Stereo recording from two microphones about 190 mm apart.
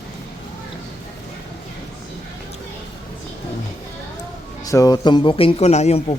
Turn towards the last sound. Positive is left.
turn(degrees=35)  # may be behind; listen again after turning